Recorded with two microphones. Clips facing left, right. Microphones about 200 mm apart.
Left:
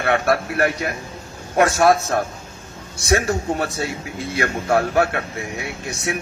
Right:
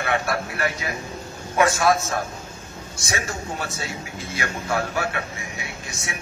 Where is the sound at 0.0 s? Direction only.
55° left (ahead or behind).